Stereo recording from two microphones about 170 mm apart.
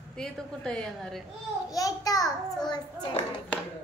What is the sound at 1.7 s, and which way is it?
A child's voice, 20° left (ahead or behind).